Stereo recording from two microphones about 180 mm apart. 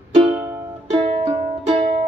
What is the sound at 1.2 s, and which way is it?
Music, 35° right (ahead or behind).